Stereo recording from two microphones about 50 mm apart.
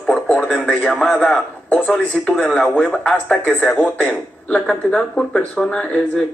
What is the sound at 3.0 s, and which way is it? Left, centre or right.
Speech, centre.